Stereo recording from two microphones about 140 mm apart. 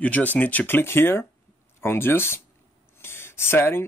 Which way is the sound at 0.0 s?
10° left (ahead or behind).